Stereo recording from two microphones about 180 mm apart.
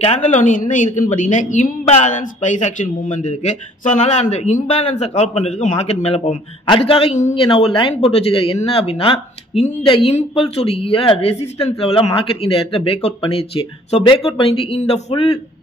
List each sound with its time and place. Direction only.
0.0 s a woman's voice: 35° left (ahead or behind)